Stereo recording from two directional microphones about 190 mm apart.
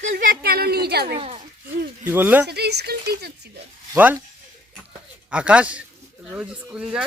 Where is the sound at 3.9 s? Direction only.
10° right (ahead or behind).